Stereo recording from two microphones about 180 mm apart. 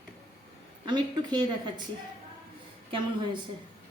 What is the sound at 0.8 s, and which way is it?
Speech, 25° right (ahead or behind).